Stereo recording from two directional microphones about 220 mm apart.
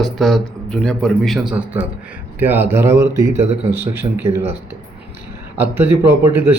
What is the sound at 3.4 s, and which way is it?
Speech, 30° right (ahead or behind).